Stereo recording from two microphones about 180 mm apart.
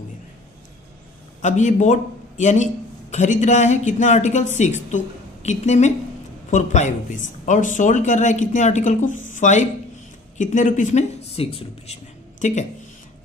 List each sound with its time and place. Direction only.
1.4 s a man's voice: 40° left (ahead or behind)